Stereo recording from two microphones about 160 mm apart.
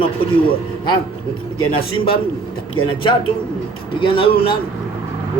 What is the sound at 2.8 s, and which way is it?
Speech, 30° left (ahead or behind).